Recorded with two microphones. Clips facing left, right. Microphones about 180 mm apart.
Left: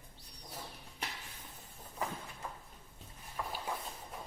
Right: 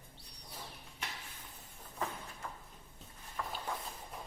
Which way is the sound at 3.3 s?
10° left (ahead or behind).